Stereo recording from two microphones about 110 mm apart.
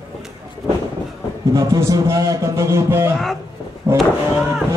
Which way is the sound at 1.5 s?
30° right (ahead or behind).